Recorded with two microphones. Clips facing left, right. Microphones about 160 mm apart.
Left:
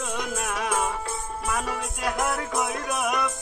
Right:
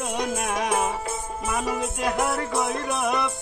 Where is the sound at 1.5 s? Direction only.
5° right (ahead or behind).